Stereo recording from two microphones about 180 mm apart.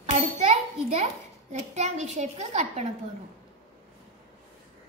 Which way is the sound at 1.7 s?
40° right (ahead or behind).